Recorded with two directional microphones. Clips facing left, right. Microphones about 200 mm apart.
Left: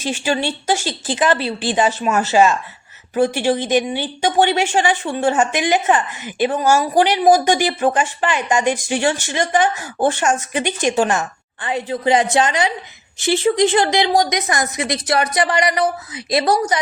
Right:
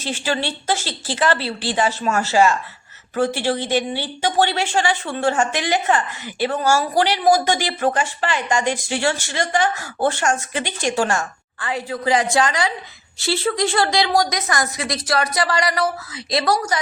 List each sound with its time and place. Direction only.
0.0 s a woman's voice: 15° left (ahead or behind)